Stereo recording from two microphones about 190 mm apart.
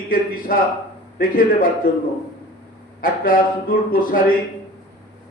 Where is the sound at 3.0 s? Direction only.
50° left (ahead or behind).